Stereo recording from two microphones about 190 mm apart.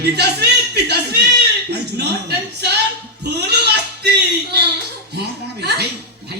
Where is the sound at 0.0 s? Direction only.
60° right (ahead or behind).